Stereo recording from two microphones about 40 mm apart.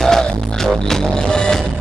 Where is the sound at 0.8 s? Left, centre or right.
Centre.